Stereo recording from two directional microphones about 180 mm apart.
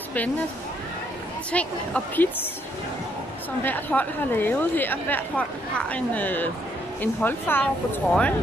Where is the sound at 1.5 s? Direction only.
5° left (ahead or behind).